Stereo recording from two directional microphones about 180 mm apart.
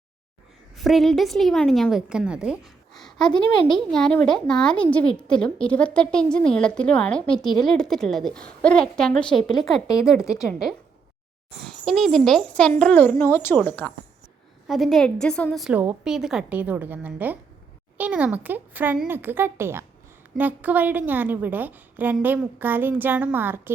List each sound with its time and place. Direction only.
0.8 s a woman's voice: centre (ahead or behind)